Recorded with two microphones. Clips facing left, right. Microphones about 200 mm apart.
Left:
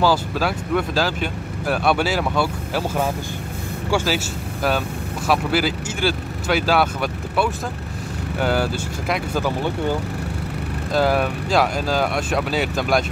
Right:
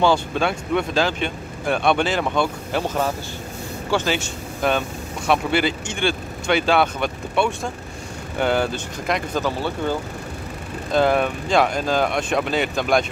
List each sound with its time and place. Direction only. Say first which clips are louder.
0.0 s speech: right 1 dB; 5° left (ahead or behind)
10.9 s speech: right 1 dB; 5° left (ahead or behind)